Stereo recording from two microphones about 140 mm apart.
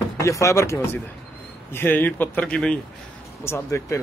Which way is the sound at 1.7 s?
15° left (ahead or behind).